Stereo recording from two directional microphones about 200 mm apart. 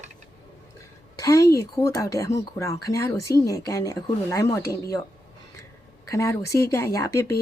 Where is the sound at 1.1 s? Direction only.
15° left (ahead or behind).